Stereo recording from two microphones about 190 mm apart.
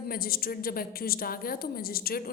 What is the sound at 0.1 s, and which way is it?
A woman's voice, 50° left (ahead or behind).